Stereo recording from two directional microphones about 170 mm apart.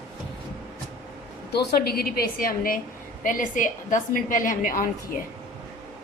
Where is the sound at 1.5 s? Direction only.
65° left (ahead or behind).